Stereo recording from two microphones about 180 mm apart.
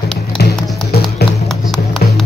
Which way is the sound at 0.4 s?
60° left (ahead or behind).